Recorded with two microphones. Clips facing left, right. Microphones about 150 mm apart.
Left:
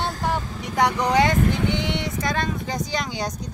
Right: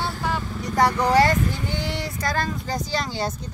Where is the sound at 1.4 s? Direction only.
75° left (ahead or behind).